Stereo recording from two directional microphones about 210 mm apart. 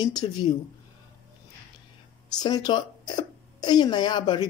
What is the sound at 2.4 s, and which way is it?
Speech, 20° left (ahead or behind).